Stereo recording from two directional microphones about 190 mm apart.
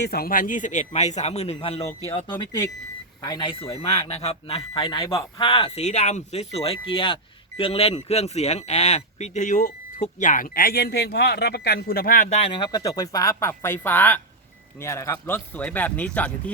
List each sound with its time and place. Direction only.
0.0 s speech: 55° left (ahead or behind); by 1.9 s 30° left (ahead or behind)
3.2 s speech: 25° left (ahead or behind); by 12.5 s 40° left (ahead or behind)
12.5 s speech: 25° left (ahead or behind); by 16.3 s 5° left (ahead or behind)